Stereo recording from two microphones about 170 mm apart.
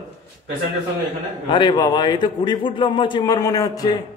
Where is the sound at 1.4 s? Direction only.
30° left (ahead or behind).